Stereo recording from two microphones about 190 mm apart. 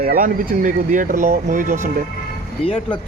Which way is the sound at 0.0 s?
50° right (ahead or behind).